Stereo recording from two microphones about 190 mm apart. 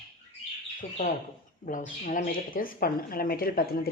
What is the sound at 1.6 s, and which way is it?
Speech, 45° left (ahead or behind).